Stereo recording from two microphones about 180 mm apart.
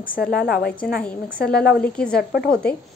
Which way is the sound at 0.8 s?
5° left (ahead or behind).